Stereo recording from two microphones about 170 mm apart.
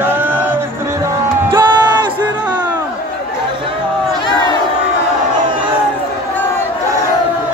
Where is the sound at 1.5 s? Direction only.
25° right (ahead or behind).